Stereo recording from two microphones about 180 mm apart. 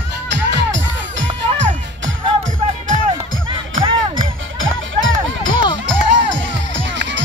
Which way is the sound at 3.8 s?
30° right (ahead or behind).